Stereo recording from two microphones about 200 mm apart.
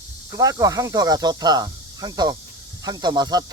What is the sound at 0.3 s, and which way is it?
Speech, 20° right (ahead or behind).